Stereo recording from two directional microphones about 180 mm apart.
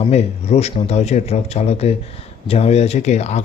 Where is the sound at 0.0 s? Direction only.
35° left (ahead or behind).